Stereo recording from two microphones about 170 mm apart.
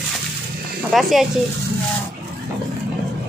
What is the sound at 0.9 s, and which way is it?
Speech, centre (ahead or behind).